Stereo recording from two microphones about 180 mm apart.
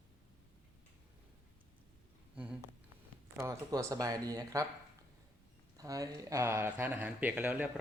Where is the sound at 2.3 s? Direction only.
5° right (ahead or behind).